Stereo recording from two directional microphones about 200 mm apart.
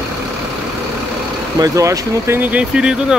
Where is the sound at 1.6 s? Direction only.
15° right (ahead or behind).